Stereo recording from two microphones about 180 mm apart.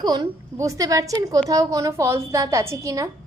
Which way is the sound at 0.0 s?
20° right (ahead or behind).